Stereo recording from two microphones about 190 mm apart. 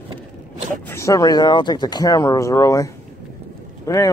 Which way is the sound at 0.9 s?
15° left (ahead or behind).